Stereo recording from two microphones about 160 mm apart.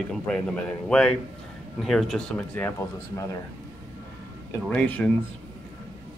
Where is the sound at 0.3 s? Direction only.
5° left (ahead or behind).